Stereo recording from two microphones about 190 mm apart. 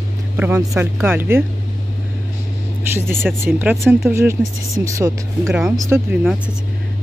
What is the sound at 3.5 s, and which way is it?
Speech, 10° right (ahead or behind).